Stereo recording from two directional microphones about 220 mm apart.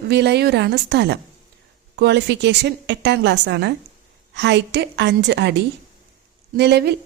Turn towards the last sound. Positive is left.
turn(degrees=-50)  # may be behind; listen again after turning